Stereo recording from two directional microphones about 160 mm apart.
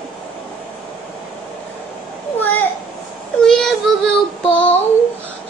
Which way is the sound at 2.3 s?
10° left (ahead or behind).